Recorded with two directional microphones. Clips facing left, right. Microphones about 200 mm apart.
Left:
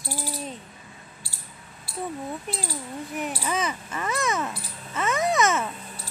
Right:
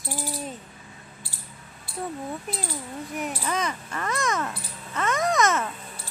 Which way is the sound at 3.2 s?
Centre (ahead or behind).